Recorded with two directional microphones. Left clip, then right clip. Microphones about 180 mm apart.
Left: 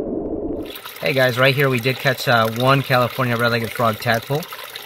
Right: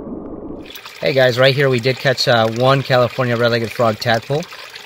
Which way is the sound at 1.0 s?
35° right (ahead or behind).